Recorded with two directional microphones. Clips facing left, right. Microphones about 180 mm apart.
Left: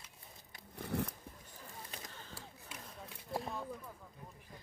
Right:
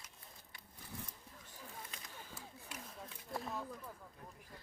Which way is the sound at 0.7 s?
70° left (ahead or behind).